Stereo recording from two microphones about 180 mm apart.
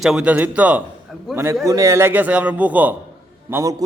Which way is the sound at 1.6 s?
20° right (ahead or behind).